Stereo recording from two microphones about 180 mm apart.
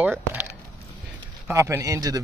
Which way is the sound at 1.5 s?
15° right (ahead or behind).